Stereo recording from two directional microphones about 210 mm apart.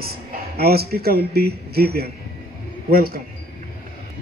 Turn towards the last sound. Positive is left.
turn(degrees=-45)  # may be behind; listen again after turning